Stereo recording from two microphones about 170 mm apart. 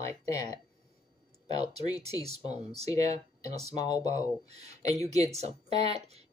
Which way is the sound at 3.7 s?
25° left (ahead or behind).